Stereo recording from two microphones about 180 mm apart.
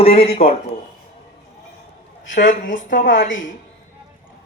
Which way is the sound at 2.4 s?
45° left (ahead or behind).